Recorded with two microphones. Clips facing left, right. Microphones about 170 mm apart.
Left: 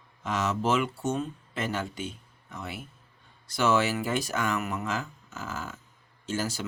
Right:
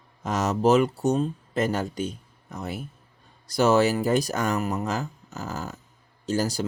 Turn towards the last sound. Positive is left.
turn(degrees=-40)  # may be behind; listen again after turning